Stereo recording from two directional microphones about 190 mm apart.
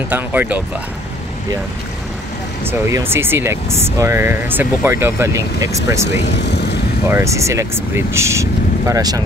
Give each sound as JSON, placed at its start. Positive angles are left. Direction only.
{"t": 0.1, "sound": "speech", "side_deg": -10}
{"t": 2.6, "sound": "speech", "side_deg": -10}
{"t": 6.2, "sound": "speech", "side_deg": 65}
{"t": 7.1, "sound": "speech", "side_deg": -15}